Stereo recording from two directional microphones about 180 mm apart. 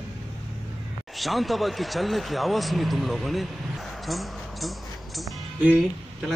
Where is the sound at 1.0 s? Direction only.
Centre (ahead or behind).